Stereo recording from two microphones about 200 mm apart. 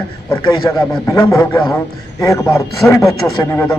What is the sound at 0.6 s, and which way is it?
A man's voice, 15° left (ahead or behind).